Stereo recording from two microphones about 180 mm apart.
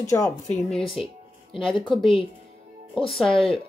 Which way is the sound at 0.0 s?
15° left (ahead or behind).